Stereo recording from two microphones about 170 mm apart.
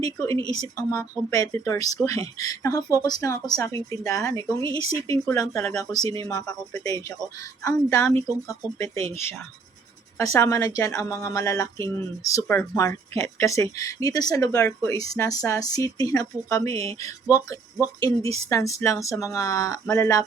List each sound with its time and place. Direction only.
0.4 s a woman's voice: 20° left (ahead or behind)
10.2 s a woman's voice: 20° left (ahead or behind)